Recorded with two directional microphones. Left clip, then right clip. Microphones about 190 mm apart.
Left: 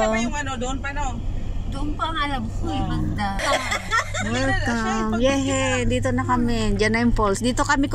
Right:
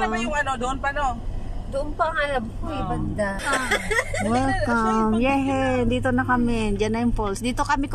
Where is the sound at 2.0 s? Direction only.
20° left (ahead or behind).